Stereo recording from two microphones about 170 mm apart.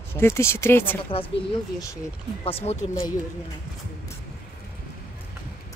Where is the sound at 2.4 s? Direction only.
35° left (ahead or behind).